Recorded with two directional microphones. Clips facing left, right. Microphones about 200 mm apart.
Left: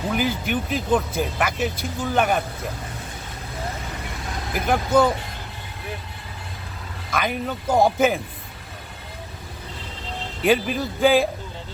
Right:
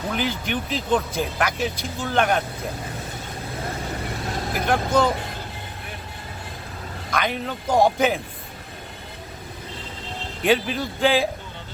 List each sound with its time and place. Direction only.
0.1 s speech: 5° left (ahead or behind)
4.6 s speech: 5° left (ahead or behind)
7.1 s speech: 5° left (ahead or behind)
10.4 s speech: 5° left (ahead or behind)